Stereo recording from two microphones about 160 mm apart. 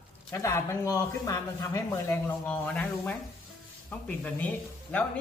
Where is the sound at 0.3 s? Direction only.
15° left (ahead or behind).